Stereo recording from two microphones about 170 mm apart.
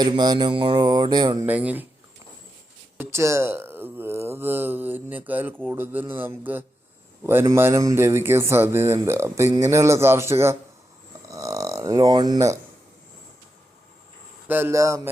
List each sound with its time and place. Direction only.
0.0 s speech: 25° right (ahead or behind)
1.5 s speech: 10° right (ahead or behind)
3.0 s speech: 15° right (ahead or behind)
14.4 s speech: 15° right (ahead or behind)